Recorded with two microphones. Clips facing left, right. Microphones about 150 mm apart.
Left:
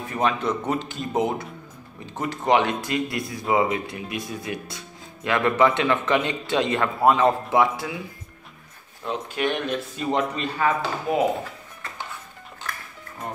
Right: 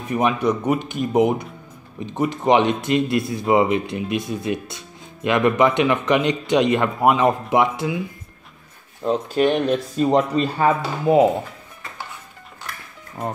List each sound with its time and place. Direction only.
0.1 s speech: 15° right (ahead or behind)
9.0 s speech: 35° right (ahead or behind)